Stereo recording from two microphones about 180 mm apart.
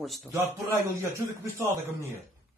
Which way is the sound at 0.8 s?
15° right (ahead or behind).